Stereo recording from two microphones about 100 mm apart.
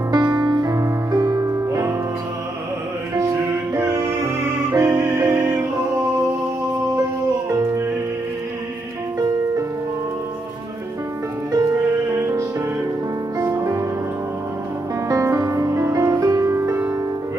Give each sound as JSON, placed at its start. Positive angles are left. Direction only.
{"t": 0.1, "sound": "music", "side_deg": -45}
{"t": 3.7, "sound": "music", "side_deg": -30}
{"t": 7.4, "sound": "music", "side_deg": -30}
{"t": 13.4, "sound": "music", "side_deg": -35}
{"t": 15.0, "sound": "music", "side_deg": -35}